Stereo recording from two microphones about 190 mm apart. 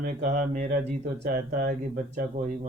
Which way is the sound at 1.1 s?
55° right (ahead or behind).